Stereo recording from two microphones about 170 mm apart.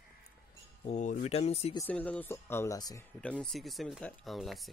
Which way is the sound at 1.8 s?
10° left (ahead or behind).